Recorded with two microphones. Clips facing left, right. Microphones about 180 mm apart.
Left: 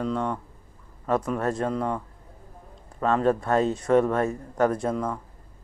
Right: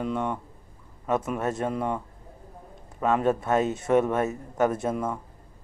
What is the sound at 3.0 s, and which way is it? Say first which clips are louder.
Speech: left 1 dB; 15° right (ahead or behind).